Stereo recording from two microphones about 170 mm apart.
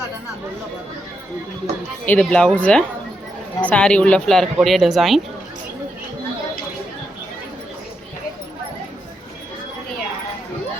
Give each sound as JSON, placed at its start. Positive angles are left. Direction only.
{"t": 2.0, "sound": "speech", "side_deg": 5}